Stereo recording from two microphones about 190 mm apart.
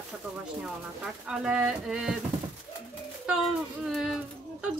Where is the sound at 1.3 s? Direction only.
5° right (ahead or behind).